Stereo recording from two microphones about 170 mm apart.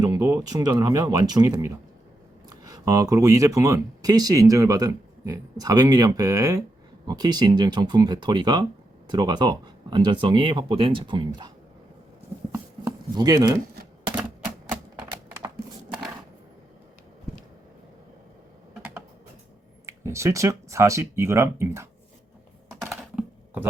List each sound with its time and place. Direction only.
0.0 s speech: 20° right (ahead or behind)
12.5 s chopping: 20° right (ahead or behind)
18.8 s typing: 10° right (ahead or behind)
19.8 s speech: 15° right (ahead or behind)
22.8 s typing: 5° right (ahead or behind)